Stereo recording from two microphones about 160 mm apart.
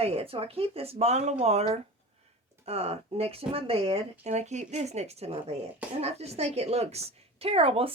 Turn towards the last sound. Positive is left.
turn(degrees=-35)  # may be behind; listen again after turning